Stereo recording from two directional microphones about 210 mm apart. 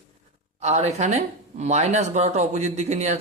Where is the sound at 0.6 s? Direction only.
35° right (ahead or behind).